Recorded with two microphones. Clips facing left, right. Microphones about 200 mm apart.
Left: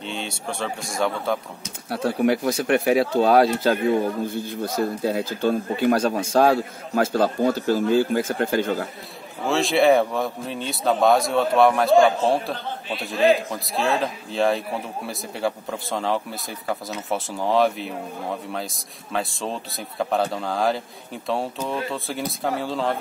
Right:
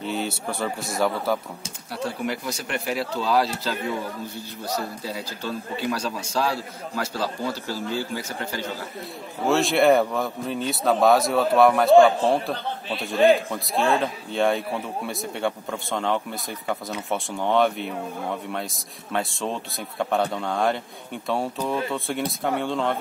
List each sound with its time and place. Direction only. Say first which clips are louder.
0.0 s a man's voice: right 3 dB; 5° right (ahead or behind)
1.9 s speech: left 7 dB; 60° left (ahead or behind)
9.5 s a man's voice: left 1 dB; centre (ahead or behind)
19.1 s a man's voice: even; centre (ahead or behind)